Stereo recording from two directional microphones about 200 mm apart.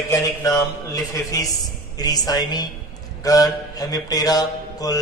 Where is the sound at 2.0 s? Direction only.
20° left (ahead or behind).